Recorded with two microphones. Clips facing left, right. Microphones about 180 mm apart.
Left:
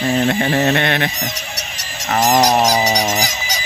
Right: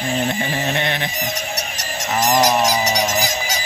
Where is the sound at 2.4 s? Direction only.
45° left (ahead or behind).